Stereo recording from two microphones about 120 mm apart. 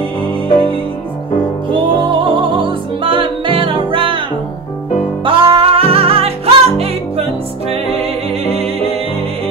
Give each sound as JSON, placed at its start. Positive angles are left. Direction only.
{"t": 1.7, "sound": "music", "side_deg": -45}
{"t": 5.2, "sound": "music", "side_deg": -45}